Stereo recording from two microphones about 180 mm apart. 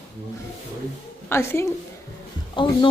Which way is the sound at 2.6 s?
25° left (ahead or behind).